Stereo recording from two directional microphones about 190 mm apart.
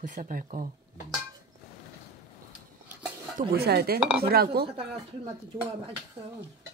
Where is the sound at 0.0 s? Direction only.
45° right (ahead or behind).